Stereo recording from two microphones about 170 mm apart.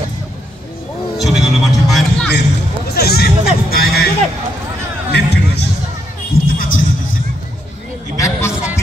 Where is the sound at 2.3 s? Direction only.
80° left; by 4.0 s 65° left (ahead or behind).